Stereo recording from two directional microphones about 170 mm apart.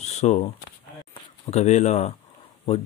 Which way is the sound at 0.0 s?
40° left (ahead or behind).